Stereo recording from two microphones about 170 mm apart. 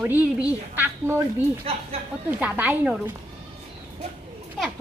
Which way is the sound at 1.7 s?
35° right (ahead or behind).